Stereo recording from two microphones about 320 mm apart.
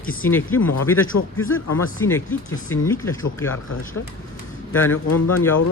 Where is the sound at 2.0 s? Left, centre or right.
Centre.